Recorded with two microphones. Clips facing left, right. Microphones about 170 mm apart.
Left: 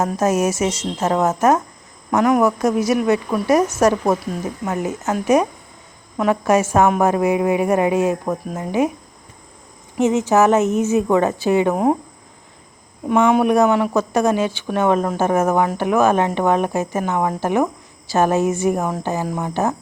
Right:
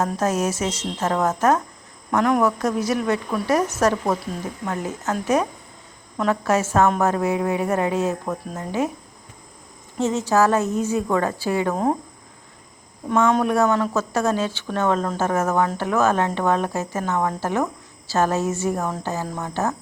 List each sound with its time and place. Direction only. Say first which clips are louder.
0.0 s speech: left 4 dB; 10° left (ahead or behind)
10.0 s speech: left 4 dB; 15° left (ahead or behind)
13.1 s speech: left 4 dB; 10° left (ahead or behind)